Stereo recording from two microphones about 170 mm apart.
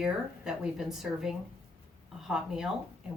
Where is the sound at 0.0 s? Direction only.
5° right (ahead or behind).